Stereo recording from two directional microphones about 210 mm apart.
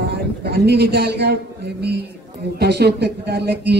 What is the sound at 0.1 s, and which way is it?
Speech, 50° right (ahead or behind).